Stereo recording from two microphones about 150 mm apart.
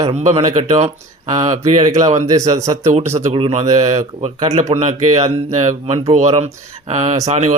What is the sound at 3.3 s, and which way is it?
Speech, 40° right (ahead or behind).